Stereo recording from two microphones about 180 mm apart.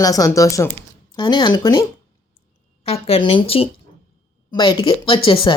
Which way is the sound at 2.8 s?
35° left (ahead or behind).